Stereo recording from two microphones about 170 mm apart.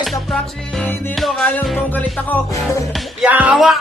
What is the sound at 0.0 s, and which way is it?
Music, centre (ahead or behind).